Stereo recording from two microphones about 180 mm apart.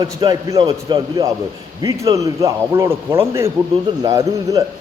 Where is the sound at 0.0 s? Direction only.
25° right (ahead or behind).